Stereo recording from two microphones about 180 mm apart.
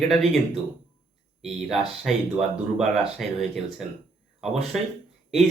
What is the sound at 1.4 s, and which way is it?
Speech, centre (ahead or behind).